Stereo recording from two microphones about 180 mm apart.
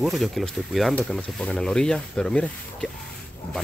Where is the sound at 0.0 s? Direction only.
Centre (ahead or behind).